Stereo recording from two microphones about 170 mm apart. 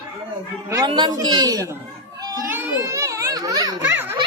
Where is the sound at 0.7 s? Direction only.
25° right (ahead or behind).